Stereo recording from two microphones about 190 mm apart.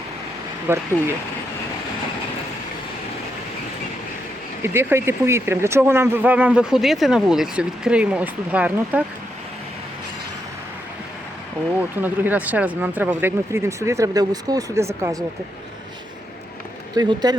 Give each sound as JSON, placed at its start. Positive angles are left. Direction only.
{"t": 0.7, "sound": "speech", "side_deg": -10}
{"t": 4.6, "sound": "speech", "side_deg": -10}
{"t": 11.8, "sound": "speech", "side_deg": -10}
{"t": 16.9, "sound": "speech", "side_deg": -20}